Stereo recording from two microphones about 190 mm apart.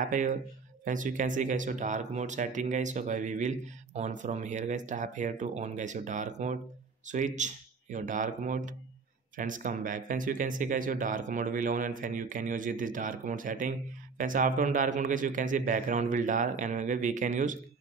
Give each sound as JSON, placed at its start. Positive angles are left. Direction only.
{"t": 0.0, "sound": "speech", "side_deg": -40}